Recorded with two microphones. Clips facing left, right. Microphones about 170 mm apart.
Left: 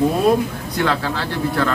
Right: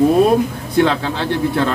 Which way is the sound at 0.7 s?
25° right (ahead or behind).